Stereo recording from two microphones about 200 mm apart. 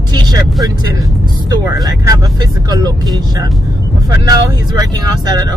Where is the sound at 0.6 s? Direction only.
15° right (ahead or behind).